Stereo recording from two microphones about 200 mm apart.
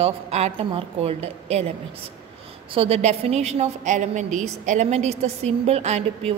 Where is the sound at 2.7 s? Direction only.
30° right (ahead or behind).